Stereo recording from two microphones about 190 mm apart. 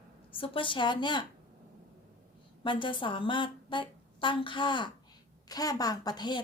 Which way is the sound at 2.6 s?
25° left (ahead or behind).